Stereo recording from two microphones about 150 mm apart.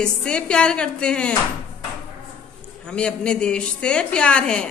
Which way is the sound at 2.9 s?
5° left (ahead or behind).